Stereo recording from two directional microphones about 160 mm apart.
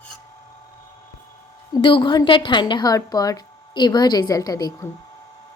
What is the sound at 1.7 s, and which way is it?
A woman's voice, 30° left (ahead or behind).